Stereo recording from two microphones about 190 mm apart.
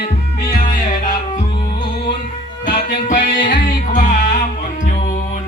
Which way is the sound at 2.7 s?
45° left (ahead or behind).